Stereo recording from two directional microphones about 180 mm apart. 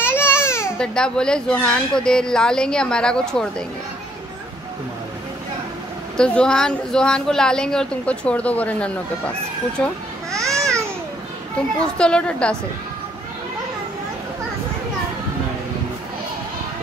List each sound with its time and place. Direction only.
0.0 s babbling: 10° left (ahead or behind)
0.7 s speech: 5° left (ahead or behind)
6.1 s speech: 5° left (ahead or behind)
10.3 s babbling: 15° right (ahead or behind)
12.0 s speech: 5° left (ahead or behind)